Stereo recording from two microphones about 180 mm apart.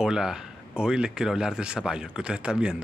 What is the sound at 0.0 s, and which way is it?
Speech, 5° right (ahead or behind).